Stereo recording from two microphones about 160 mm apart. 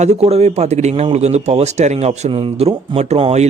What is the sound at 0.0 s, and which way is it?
Speech, 40° right (ahead or behind).